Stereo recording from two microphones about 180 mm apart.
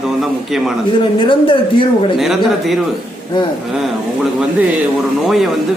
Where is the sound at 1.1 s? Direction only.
30° left (ahead or behind).